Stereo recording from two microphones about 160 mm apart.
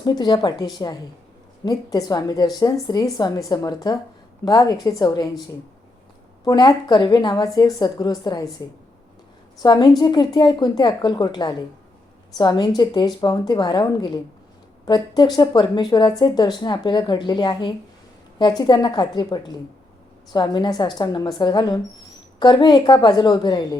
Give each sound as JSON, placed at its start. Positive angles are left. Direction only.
{"t": 0.0, "sound": "a woman's voice", "side_deg": 30}
{"t": 6.4, "sound": "a woman's voice", "side_deg": 25}
{"t": 9.6, "sound": "a woman's voice", "side_deg": 25}